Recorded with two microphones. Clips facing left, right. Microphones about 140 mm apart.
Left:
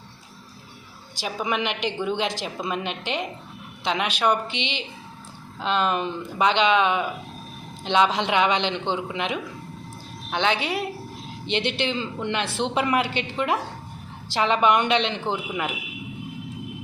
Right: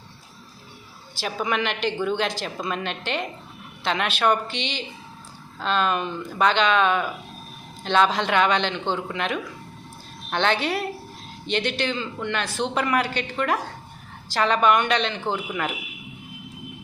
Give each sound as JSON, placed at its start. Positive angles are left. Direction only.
{"t": 1.2, "sound": "a woman's voice", "side_deg": 15}
{"t": 11.4, "sound": "a woman's voice", "side_deg": 25}